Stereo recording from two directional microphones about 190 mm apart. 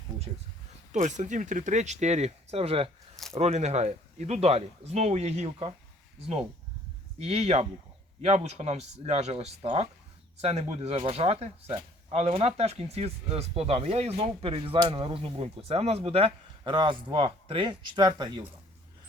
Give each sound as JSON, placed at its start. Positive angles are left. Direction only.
{"t": 0.9, "sound": "speech", "side_deg": -40}
{"t": 7.2, "sound": "speech", "side_deg": -35}